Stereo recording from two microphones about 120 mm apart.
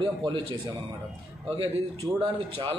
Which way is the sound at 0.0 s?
45° right (ahead or behind).